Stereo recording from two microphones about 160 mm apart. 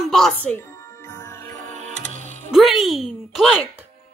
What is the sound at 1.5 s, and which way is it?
Music, 50° right (ahead or behind).